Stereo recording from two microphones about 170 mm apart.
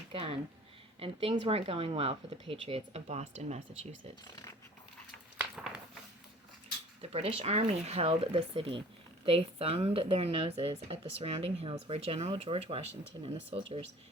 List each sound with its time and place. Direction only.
0.1 s speech: 30° right (ahead or behind)
5.4 s a sound: 5° right (ahead or behind)
7.0 s speech: 35° right (ahead or behind)